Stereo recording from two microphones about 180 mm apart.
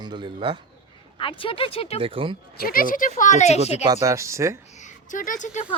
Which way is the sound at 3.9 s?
15° right (ahead or behind).